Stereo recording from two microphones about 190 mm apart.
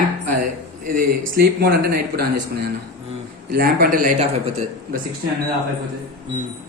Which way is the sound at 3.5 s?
50° right (ahead or behind).